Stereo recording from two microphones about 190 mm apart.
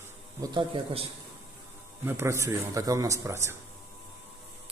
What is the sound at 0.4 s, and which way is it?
Speech, 25° right (ahead or behind).